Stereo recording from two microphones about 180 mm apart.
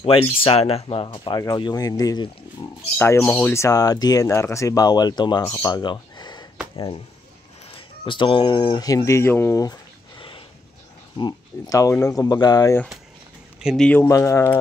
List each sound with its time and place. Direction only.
0.0 s speech: 30° left (ahead or behind)
3.0 s speech: 10° left (ahead or behind)
7.7 s speech: 25° left (ahead or behind)
13.6 s speech: centre (ahead or behind)
14.0 s speech: 15° left (ahead or behind)